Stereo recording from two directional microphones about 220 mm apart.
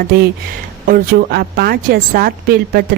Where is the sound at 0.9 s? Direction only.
45° right (ahead or behind).